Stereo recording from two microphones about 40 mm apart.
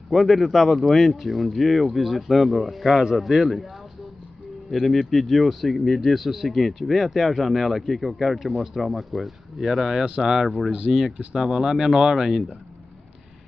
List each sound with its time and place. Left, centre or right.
0.1 s speech: centre
4.7 s speech: centre